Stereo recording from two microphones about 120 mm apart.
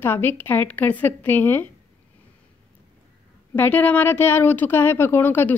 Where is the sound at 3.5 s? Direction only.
15° left (ahead or behind).